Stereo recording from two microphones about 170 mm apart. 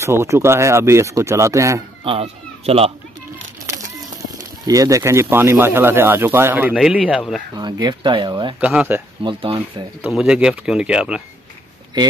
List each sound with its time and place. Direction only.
0.0 s speech: 15° right (ahead or behind)
2.0 s speech: 35° right (ahead or behind)
4.6 s speech: 20° right (ahead or behind); by 7.4 s centre (ahead or behind)
7.5 s speech: 25° right (ahead or behind)
8.5 s speech: 5° right (ahead or behind)
9.2 s speech: 30° right (ahead or behind)
10.1 s speech: 5° right (ahead or behind)